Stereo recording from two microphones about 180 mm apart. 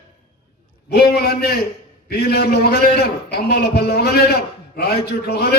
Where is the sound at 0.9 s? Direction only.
60° left (ahead or behind).